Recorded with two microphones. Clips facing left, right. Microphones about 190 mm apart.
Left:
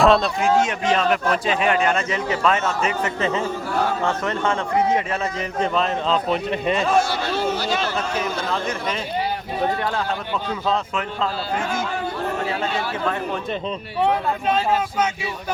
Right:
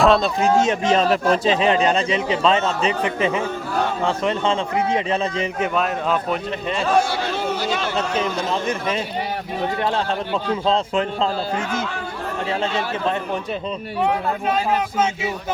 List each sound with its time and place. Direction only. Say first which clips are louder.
0.0 s speech: even; centre (ahead or behind)
0.4 s a man's voice: right 2 dB; 25° right (ahead or behind)
5.5 s speech: left 3 dB; 10° right (ahead or behind)
6.7 s a man's voice: left 2 dB; 10° left (ahead or behind)
9.8 s a man's voice: right 3 dB; 25° right (ahead or behind)
14.0 s speech: left 1 dB; 5° right (ahead or behind)